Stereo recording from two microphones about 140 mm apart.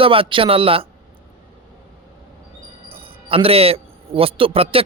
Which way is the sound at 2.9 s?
40° right (ahead or behind).